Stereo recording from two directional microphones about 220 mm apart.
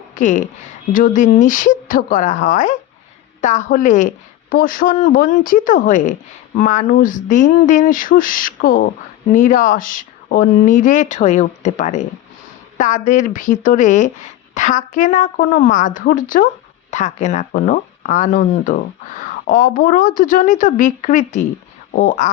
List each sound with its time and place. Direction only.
0.1 s speech: 35° left (ahead or behind)